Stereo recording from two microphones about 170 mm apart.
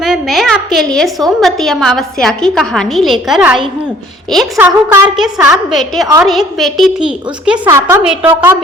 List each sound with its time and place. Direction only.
0.0 s a woman's voice: centre (ahead or behind)